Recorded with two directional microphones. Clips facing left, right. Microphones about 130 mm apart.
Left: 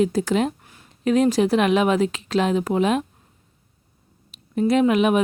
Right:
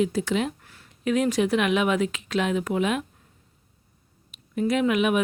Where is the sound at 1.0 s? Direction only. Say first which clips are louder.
Left 5 dB; 35° left (ahead or behind).